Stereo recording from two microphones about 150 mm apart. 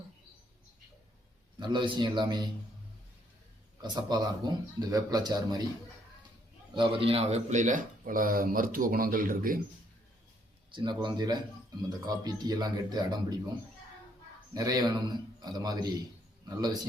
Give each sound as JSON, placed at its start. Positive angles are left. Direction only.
{"t": 1.5, "sound": "a man's voice", "side_deg": -30}
{"t": 3.8, "sound": "speech", "side_deg": -30}
{"t": 6.7, "sound": "speech", "side_deg": -35}
{"t": 10.7, "sound": "a man's voice", "side_deg": -30}
{"t": 14.5, "sound": "speech", "side_deg": -25}